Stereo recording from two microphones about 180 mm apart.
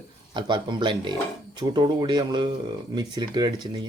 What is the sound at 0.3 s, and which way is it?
Speech, 25° right (ahead or behind).